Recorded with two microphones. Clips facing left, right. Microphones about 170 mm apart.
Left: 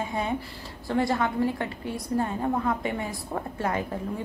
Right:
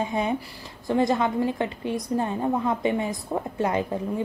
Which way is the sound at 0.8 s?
20° right (ahead or behind).